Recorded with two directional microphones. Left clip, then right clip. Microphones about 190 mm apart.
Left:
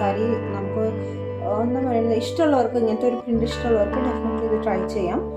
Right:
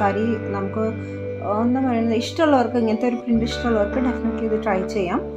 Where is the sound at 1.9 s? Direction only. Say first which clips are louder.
Left 1 dB; 10° right (ahead or behind).